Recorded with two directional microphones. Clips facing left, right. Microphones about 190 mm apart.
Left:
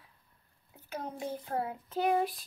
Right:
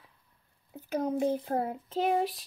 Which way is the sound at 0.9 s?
40° right (ahead or behind).